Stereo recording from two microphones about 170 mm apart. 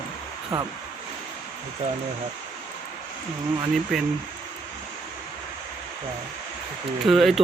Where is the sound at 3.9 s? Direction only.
Centre (ahead or behind).